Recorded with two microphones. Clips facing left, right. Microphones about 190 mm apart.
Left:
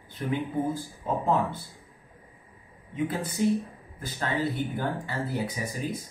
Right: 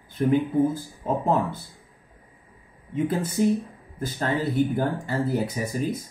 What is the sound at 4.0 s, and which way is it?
Speech, 45° right (ahead or behind).